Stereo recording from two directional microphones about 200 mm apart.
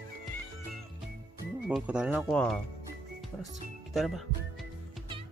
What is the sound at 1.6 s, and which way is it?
Speech, 5° right (ahead or behind).